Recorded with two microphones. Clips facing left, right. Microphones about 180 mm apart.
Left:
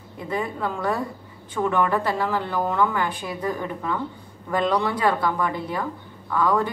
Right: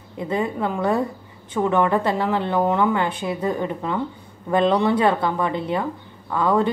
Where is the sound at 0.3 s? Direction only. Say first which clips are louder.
Right 3 dB; 20° right (ahead or behind).